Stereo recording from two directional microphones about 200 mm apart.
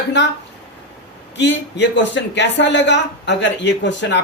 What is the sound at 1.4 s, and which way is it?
A man's voice, 60° left (ahead or behind).